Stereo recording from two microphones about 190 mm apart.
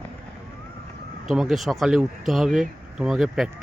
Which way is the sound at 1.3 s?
Centre (ahead or behind).